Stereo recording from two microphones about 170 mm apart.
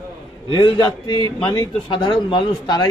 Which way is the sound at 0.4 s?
30° left (ahead or behind).